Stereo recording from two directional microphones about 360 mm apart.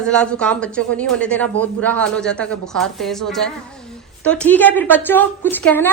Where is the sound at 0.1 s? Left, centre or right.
Centre.